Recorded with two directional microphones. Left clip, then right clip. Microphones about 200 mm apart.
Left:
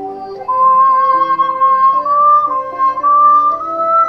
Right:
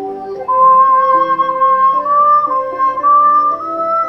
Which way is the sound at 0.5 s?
40° right (ahead or behind).